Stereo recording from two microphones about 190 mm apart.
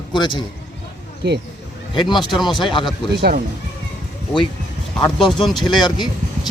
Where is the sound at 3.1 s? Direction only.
55° right (ahead or behind).